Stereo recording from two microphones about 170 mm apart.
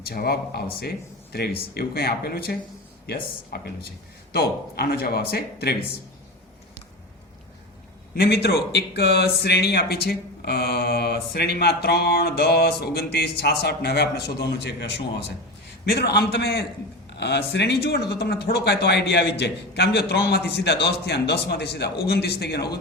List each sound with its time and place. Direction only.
0.0 s speech: 65° left (ahead or behind)
8.1 s speech: 70° left (ahead or behind); by 14.9 s 85° left
15.9 s speech: 75° left (ahead or behind)
17.2 s a man's voice: 90° left
18.2 s speech: 75° left (ahead or behind)